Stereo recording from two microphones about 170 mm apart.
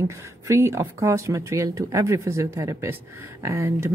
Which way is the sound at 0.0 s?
15° right (ahead or behind).